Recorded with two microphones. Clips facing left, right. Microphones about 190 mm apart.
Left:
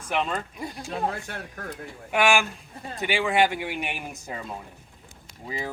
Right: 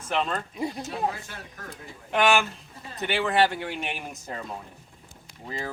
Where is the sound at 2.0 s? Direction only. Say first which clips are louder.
Even; 10° left (ahead or behind).